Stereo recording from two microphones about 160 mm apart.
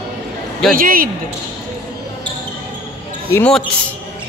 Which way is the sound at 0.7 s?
60° right (ahead or behind).